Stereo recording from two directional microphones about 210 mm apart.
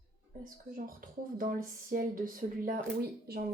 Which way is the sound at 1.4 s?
40° right (ahead or behind).